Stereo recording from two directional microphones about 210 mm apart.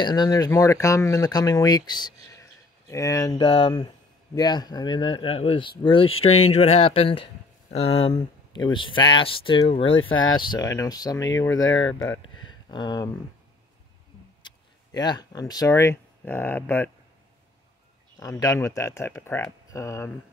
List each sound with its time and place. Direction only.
0.0 s speech: 20° left (ahead or behind)
12.4 s a sound: 20° left (ahead or behind)
14.4 s speech: 20° left (ahead or behind)
18.2 s speech: 15° left (ahead or behind)